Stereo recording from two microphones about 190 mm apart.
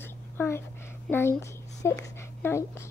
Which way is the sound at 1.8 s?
15° left (ahead or behind).